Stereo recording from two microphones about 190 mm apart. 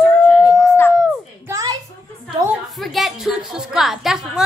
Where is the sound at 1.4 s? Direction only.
15° right (ahead or behind).